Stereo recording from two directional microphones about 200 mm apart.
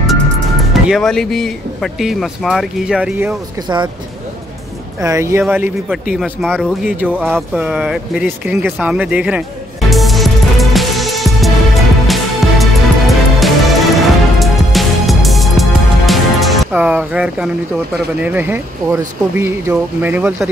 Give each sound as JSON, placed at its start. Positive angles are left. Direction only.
{"t": 0.8, "sound": "speech", "side_deg": 0}
{"t": 3.6, "sound": "speech", "side_deg": -20}
{"t": 5.0, "sound": "speech", "side_deg": -15}
{"t": 7.2, "sound": "a sound", "side_deg": 0}
{"t": 12.1, "sound": "music", "side_deg": 0}
{"t": 18.2, "sound": "speech", "side_deg": -10}